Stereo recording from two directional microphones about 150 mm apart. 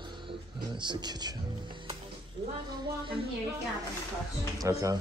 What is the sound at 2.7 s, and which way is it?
Speech, 35° right (ahead or behind).